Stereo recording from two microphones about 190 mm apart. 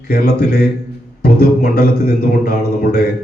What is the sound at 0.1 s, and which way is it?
A man's voice, 50° left (ahead or behind).